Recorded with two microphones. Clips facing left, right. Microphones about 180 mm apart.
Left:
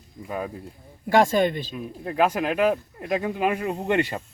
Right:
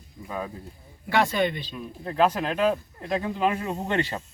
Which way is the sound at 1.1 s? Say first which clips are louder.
Left 4 dB; 45° left (ahead or behind).